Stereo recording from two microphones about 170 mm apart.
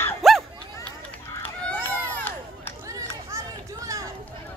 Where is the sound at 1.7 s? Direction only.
10° left (ahead or behind).